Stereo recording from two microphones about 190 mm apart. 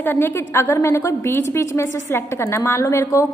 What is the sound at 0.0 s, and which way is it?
A woman's voice, 10° left (ahead or behind).